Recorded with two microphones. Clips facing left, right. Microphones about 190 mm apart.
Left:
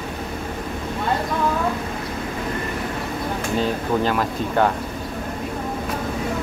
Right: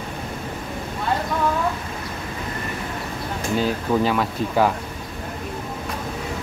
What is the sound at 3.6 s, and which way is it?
Speech, centre (ahead or behind).